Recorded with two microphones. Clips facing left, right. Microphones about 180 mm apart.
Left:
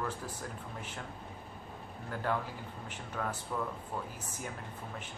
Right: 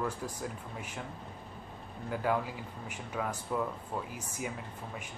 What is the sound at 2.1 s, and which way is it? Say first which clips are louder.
Speech: right 3 dB; 5° right (ahead or behind).